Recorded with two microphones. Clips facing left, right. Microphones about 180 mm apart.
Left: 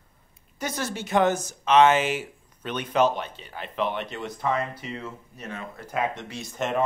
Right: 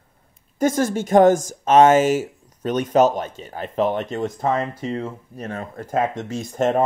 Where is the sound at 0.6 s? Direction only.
45° right (ahead or behind).